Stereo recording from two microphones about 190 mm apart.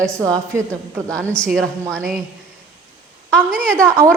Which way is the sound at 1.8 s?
15° right (ahead or behind).